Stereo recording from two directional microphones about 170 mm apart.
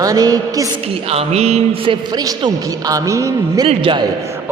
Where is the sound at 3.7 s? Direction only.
30° right (ahead or behind).